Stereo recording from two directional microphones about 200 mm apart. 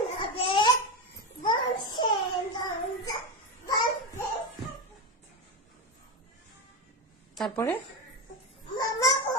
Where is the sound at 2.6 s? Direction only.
20° left (ahead or behind).